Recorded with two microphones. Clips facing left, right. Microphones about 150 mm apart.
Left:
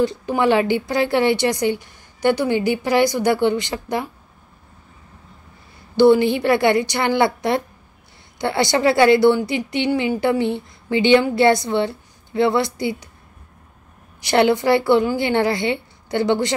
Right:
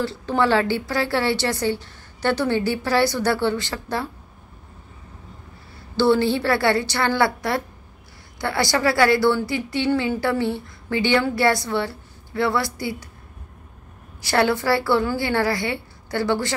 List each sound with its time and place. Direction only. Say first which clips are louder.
0.0 s a woman's voice: left 3 dB; 15° left (ahead or behind)
5.9 s a woman's voice: left 5 dB; 15° left (ahead or behind)
14.2 s a woman's voice: left 4 dB; 20° left (ahead or behind)